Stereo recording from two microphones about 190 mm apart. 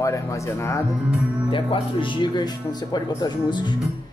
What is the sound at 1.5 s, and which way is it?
Speech, 25° left (ahead or behind).